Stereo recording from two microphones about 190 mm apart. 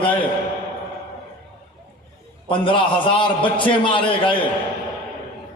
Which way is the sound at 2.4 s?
25° left (ahead or behind).